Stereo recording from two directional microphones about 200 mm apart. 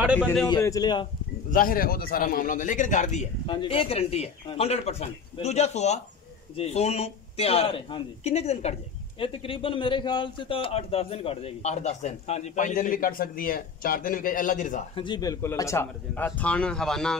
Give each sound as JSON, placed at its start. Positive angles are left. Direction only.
{"t": 0.0, "sound": "a man's voice", "side_deg": -5}
{"t": 0.5, "sound": "a man's voice", "side_deg": 15}
{"t": 1.5, "sound": "a man's voice", "side_deg": 45}
{"t": 15.0, "sound": "speech", "side_deg": 20}